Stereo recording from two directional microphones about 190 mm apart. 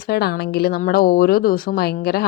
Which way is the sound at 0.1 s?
55° left (ahead or behind).